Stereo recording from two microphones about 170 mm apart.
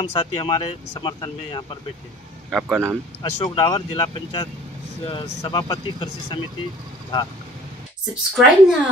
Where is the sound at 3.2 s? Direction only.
25° left (ahead or behind).